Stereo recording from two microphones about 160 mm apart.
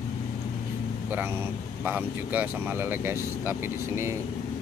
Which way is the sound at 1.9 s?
10° right (ahead or behind).